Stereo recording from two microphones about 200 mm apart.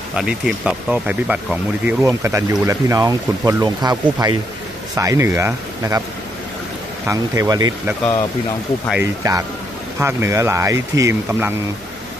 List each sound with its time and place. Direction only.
0.1 s speech: 5° right (ahead or behind)
7.1 s speech: 15° right (ahead or behind)
9.0 s speech: 15° right (ahead or behind)